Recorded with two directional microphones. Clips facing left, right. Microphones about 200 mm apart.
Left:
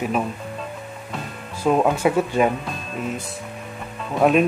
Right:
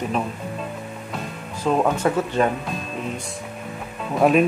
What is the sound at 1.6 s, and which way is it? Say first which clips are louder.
Speech: left 2 dB; 10° left (ahead or behind).